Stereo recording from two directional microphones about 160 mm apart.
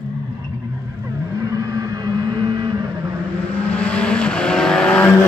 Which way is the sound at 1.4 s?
20° right (ahead or behind).